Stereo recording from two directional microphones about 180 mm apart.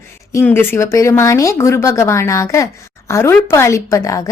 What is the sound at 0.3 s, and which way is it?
Speech, 15° left (ahead or behind).